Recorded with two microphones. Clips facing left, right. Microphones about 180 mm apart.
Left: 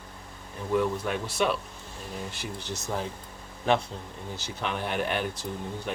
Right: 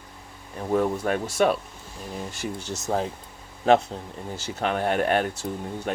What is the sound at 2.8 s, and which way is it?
Speech, 55° right (ahead or behind).